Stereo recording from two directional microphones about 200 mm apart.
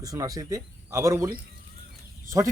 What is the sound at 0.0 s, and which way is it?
Speech, 15° right (ahead or behind).